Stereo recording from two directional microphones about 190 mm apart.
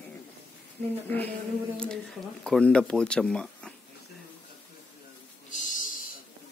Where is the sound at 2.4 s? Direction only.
5° left (ahead or behind).